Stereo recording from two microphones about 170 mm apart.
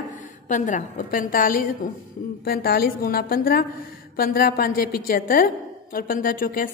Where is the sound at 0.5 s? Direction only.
45° left (ahead or behind).